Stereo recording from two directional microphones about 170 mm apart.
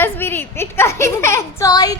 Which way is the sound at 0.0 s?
10° left (ahead or behind).